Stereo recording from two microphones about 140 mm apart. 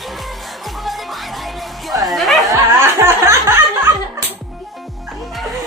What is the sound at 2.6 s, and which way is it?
Music, 15° right (ahead or behind).